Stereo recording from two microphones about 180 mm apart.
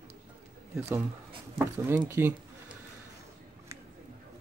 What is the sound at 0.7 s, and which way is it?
Speech, 15° right (ahead or behind).